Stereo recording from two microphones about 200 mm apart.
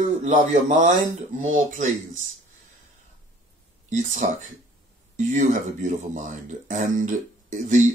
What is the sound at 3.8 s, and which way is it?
Speech, 40° right (ahead or behind).